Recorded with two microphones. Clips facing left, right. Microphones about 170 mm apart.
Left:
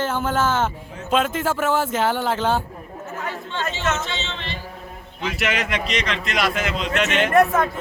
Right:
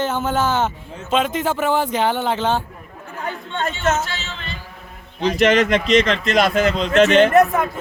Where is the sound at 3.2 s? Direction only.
35° right (ahead or behind).